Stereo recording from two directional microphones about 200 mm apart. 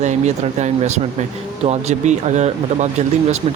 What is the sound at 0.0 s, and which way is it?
Speech, 35° right (ahead or behind).